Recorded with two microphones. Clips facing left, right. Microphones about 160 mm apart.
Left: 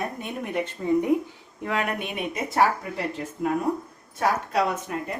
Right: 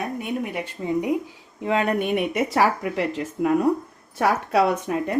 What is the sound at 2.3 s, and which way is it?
Speech, 85° right.